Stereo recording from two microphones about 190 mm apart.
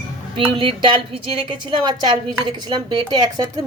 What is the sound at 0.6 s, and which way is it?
Speech, 25° right (ahead or behind).